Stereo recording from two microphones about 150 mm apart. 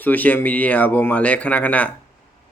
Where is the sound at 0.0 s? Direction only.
10° left (ahead or behind).